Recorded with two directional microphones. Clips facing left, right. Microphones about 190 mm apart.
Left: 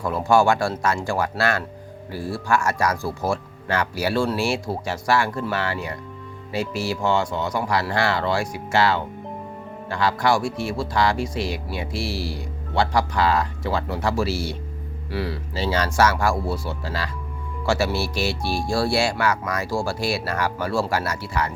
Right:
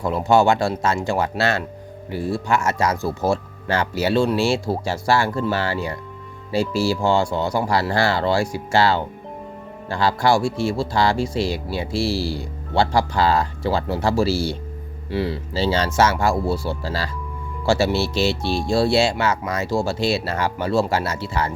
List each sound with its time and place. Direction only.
0.0 s speech: 20° right (ahead or behind)